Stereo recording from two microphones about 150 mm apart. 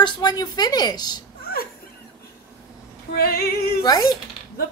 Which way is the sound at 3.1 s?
90° left.